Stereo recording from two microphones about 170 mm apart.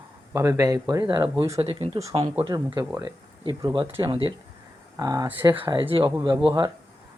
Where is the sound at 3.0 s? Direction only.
25° right (ahead or behind).